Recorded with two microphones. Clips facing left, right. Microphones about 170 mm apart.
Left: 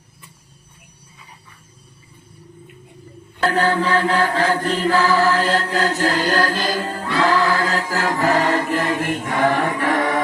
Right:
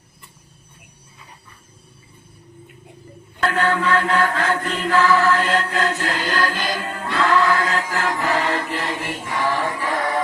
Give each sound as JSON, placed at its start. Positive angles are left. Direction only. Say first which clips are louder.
{"t": 3.4, "sound": "mantra", "louder": "left 2 dB", "side_deg": 35}